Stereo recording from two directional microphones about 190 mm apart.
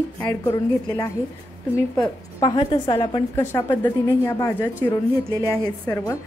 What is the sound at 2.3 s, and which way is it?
Speech, 25° left (ahead or behind).